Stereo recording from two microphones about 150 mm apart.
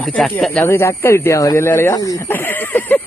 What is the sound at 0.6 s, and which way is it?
Speech, 15° left (ahead or behind).